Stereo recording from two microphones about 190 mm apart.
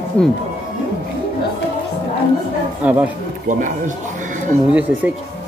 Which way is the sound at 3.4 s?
45° right (ahead or behind).